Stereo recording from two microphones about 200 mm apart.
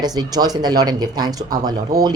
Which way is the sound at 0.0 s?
20° right (ahead or behind).